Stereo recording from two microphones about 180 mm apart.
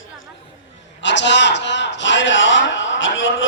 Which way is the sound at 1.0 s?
80° left.